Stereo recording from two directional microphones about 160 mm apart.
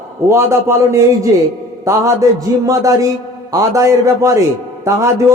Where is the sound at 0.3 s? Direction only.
15° right (ahead or behind).